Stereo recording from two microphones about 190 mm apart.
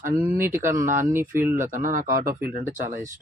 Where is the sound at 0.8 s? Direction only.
45° right (ahead or behind).